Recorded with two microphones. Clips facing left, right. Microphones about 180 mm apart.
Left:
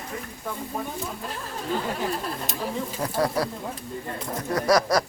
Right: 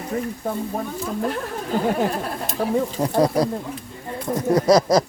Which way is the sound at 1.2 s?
60° right (ahead or behind).